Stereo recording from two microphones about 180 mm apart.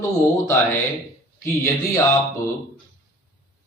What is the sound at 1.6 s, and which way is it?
Speech, 15° left (ahead or behind).